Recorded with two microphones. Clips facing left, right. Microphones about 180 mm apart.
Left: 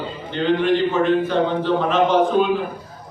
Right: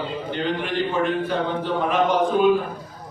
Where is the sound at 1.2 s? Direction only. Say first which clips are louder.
Left 5 dB; 10° right (ahead or behind).